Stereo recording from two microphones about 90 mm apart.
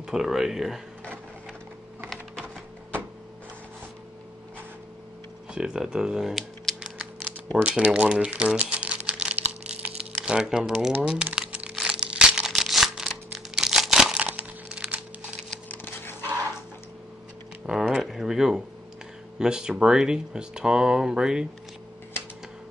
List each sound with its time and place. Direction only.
0.0 s speech: 5° right (ahead or behind)
5.5 s speech: 5° right (ahead or behind)
6.8 s typing: 10° right (ahead or behind)
7.6 s typewriter: 10° right (ahead or behind)
11.3 s crumpling: 10° right (ahead or behind)
15.7 s dog: 25° left (ahead or behind)
17.6 s a sound: 10° right (ahead or behind)
19.3 s speech: 10° right (ahead or behind)